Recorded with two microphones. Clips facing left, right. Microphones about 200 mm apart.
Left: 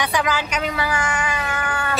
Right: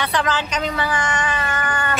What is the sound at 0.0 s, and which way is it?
Speech, 10° left (ahead or behind).